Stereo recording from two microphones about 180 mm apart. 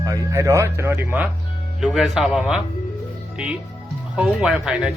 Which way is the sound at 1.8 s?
Centre (ahead or behind).